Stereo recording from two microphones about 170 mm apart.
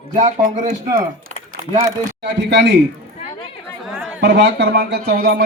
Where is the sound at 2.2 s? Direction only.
90° right.